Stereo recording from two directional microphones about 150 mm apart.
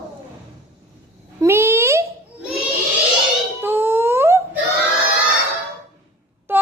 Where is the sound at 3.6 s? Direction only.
15° right (ahead or behind).